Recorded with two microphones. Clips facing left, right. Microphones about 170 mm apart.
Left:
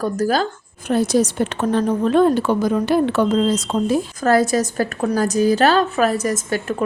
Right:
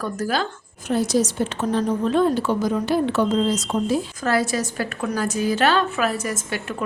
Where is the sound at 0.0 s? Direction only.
40° left (ahead or behind).